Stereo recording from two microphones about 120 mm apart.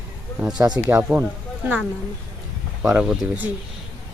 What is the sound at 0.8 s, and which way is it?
Speech, 25° right (ahead or behind).